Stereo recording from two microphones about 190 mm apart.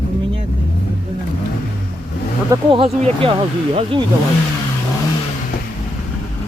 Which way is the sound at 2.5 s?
25° right (ahead or behind).